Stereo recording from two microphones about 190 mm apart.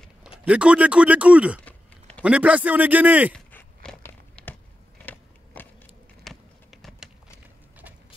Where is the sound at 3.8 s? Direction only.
5° left (ahead or behind).